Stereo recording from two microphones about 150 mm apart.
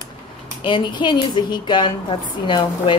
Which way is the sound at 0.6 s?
30° left (ahead or behind).